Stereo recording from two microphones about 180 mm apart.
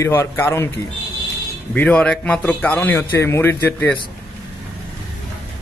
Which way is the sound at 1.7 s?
5° left (ahead or behind).